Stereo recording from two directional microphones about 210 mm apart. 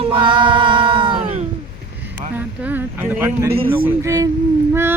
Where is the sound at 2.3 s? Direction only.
10° right (ahead or behind).